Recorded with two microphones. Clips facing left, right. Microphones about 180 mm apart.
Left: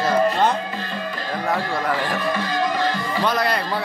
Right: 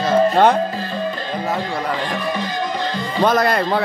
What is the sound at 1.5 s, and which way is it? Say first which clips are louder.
Speech: left 1 dB; 15° right (ahead or behind).